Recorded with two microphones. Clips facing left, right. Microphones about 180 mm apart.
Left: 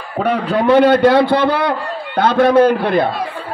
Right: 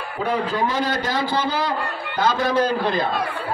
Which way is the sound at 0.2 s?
65° left (ahead or behind).